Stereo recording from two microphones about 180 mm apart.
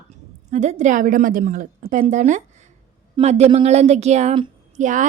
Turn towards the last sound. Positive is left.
turn(degrees=-45)  # may be behind; listen again after turning